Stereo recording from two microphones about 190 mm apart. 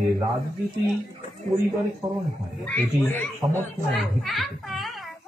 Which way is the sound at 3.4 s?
Centre (ahead or behind).